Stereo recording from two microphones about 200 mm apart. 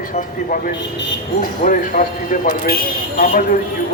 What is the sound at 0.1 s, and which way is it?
A man's voice, 45° left (ahead or behind).